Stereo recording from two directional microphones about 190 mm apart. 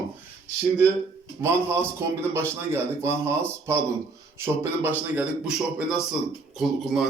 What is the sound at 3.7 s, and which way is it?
A man's voice, 15° right (ahead or behind).